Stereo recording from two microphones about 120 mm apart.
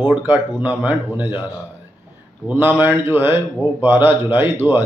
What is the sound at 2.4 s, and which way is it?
Speech, 15° right (ahead or behind).